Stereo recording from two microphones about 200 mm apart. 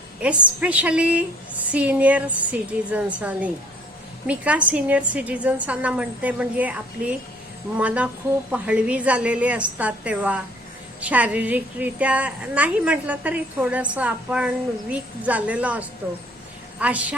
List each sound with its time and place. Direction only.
0.2 s a woman's voice: 5° right (ahead or behind)